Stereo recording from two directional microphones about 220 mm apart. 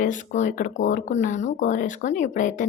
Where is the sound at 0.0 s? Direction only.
35° left (ahead or behind).